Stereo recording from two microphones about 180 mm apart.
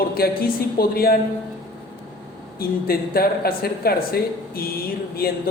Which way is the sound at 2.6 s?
55° left (ahead or behind).